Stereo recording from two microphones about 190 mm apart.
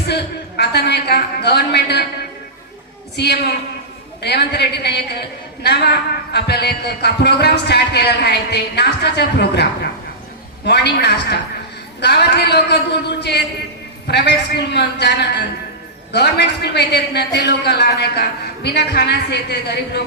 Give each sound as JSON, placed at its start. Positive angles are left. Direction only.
{"t": 0.1, "sound": "a man's voice", "side_deg": 60}
{"t": 3.2, "sound": "a man's voice", "side_deg": 60}
{"t": 10.7, "sound": "a man's voice", "side_deg": 60}